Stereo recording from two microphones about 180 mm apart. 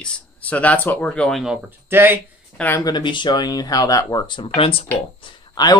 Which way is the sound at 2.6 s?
15° left (ahead or behind).